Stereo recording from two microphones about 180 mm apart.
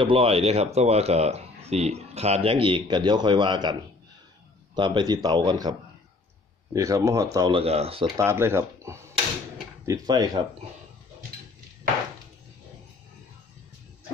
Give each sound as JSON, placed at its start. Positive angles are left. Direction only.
{"t": 0.0, "sound": "speech", "side_deg": -30}
{"t": 4.7, "sound": "speech", "side_deg": -25}
{"t": 7.3, "sound": "speech", "side_deg": -30}
{"t": 8.2, "sound": "speech", "side_deg": -15}